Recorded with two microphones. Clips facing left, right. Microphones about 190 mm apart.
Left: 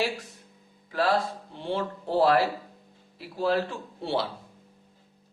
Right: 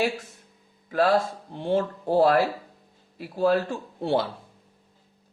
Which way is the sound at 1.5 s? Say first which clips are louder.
Right 6 dB; 50° right (ahead or behind).